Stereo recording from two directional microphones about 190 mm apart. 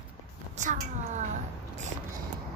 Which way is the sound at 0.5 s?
40° right (ahead or behind).